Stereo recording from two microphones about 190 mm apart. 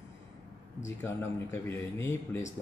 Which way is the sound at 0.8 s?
15° left (ahead or behind).